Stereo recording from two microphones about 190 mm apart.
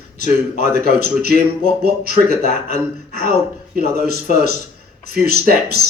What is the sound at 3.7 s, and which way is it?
Speech, 55° right (ahead or behind).